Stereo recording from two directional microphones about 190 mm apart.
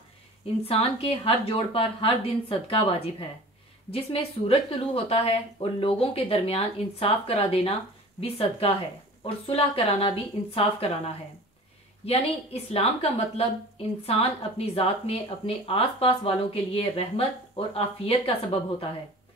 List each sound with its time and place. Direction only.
0.7 s a woman's voice: 30° left (ahead or behind)
12.1 s a woman's voice: 30° left (ahead or behind)